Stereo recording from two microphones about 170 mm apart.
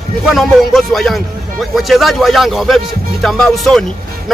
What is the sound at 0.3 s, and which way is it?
A man's voice, centre (ahead or behind).